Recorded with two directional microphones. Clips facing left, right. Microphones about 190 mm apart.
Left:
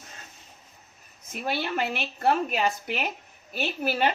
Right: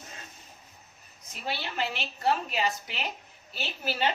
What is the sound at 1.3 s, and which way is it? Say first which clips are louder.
A woman's voice: left 7 dB; 55° left (ahead or behind).